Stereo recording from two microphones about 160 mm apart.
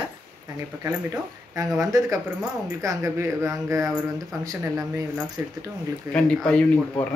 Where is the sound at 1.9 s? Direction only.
20° right (ahead or behind).